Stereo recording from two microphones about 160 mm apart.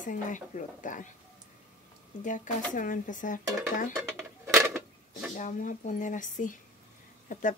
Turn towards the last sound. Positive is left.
turn(degrees=55)  # may be behind; listen again after turning